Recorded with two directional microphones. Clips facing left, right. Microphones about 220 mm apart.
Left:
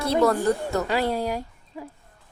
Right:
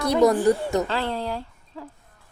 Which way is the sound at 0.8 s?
10° left (ahead or behind).